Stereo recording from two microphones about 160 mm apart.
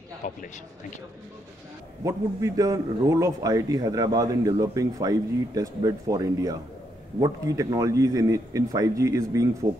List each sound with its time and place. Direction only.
0.2 s a man's voice: 50° left (ahead or behind)
2.0 s a man's voice: 20° right (ahead or behind)